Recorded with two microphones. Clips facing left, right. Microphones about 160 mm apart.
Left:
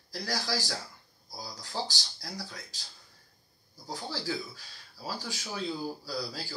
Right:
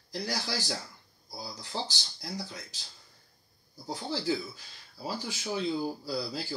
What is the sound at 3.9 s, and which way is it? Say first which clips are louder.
Speech: right 4 dB; 20° right (ahead or behind).